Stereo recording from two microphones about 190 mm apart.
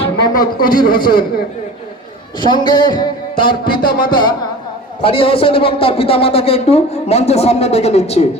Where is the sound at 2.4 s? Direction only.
25° left (ahead or behind).